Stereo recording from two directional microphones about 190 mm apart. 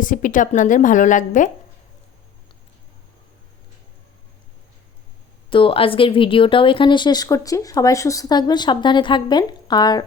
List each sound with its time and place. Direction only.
0.0 s a woman's voice: 45° left (ahead or behind)
5.5 s speech: 30° left (ahead or behind)